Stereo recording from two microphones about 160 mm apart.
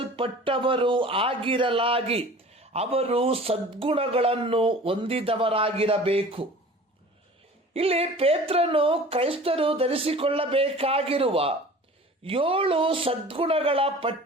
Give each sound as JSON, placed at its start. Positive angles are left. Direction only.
{"t": 0.0, "sound": "speech", "side_deg": -35}
{"t": 7.7, "sound": "speech", "side_deg": -40}